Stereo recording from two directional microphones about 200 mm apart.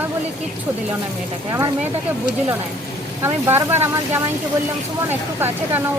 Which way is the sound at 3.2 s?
10° right (ahead or behind).